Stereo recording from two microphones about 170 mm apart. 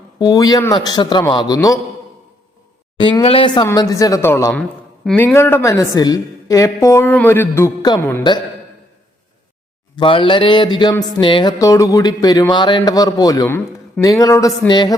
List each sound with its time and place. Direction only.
0.2 s speech: 25° left (ahead or behind)
3.0 s a woman's voice: 30° left (ahead or behind)
9.9 s speech: 30° left (ahead or behind)